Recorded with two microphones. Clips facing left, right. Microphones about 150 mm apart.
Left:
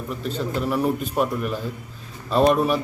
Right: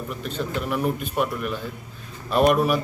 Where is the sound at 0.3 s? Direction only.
35° left (ahead or behind).